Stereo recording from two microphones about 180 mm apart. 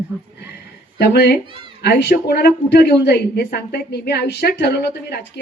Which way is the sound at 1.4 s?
30° right (ahead or behind).